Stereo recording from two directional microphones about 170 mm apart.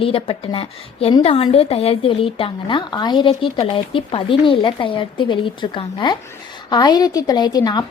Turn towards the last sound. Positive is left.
turn(degrees=25)  # may be behind; listen again after turning